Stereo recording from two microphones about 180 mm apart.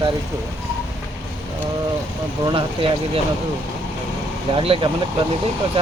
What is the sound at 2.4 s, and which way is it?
Speech, 30° right (ahead or behind).